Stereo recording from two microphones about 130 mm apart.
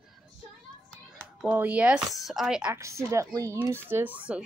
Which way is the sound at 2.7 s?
20° right (ahead or behind).